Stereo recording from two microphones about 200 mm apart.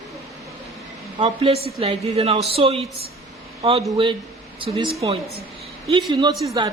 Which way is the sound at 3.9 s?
25° right (ahead or behind).